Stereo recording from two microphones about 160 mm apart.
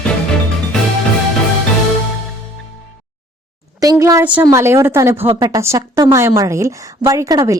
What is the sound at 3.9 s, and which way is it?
A woman's voice, 15° right (ahead or behind).